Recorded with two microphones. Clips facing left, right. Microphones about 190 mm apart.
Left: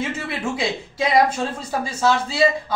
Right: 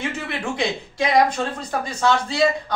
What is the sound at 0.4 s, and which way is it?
A woman's voice, 5° left (ahead or behind).